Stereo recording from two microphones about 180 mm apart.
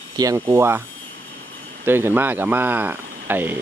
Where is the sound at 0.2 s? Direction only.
15° right (ahead or behind).